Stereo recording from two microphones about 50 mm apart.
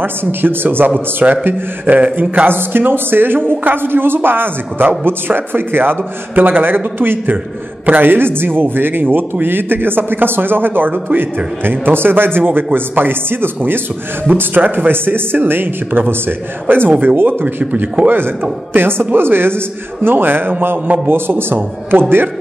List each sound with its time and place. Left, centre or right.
0.0 s a woman's voice: right
2.4 s a woman's voice: right
20.8 s a man's voice: right
21.1 s a woman's voice: right